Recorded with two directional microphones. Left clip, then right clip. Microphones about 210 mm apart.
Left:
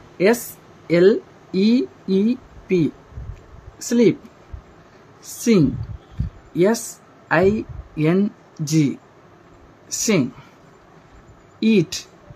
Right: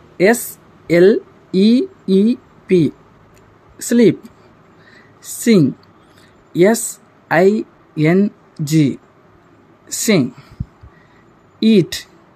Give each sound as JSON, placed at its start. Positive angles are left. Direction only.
{"t": 0.2, "sound": "speech", "side_deg": -20}
{"t": 5.2, "sound": "a woman's voice", "side_deg": -15}
{"t": 11.6, "sound": "speech", "side_deg": -20}